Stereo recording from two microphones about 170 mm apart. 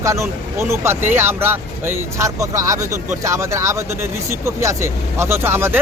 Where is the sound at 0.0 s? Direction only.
15° right (ahead or behind).